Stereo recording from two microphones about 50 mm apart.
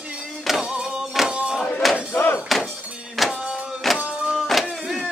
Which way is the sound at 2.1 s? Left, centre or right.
Left.